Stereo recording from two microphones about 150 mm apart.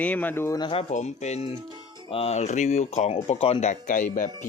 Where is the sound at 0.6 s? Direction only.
40° left (ahead or behind).